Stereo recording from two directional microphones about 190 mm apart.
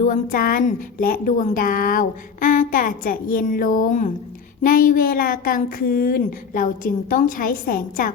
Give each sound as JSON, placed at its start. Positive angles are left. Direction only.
{"t": 0.0, "sound": "a woman's voice", "side_deg": 45}